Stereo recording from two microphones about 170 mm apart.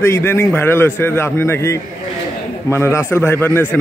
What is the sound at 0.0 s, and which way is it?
A man's voice, 15° left (ahead or behind).